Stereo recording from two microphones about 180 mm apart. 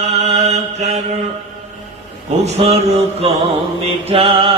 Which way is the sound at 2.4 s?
35° right (ahead or behind).